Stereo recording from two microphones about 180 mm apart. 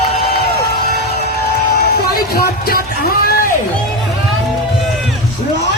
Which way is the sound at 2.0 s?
60° left (ahead or behind).